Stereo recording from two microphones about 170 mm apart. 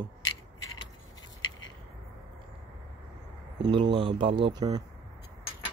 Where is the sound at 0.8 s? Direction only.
25° left (ahead or behind).